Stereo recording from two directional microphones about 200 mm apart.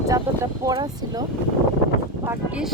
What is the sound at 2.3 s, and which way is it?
Speech, 5° right (ahead or behind).